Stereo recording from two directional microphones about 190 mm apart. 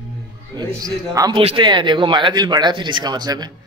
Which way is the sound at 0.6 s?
20° right (ahead or behind).